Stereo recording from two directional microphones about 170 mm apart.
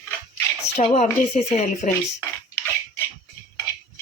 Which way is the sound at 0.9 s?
40° left (ahead or behind).